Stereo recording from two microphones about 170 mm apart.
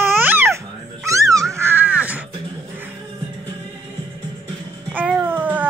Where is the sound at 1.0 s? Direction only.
20° right (ahead or behind).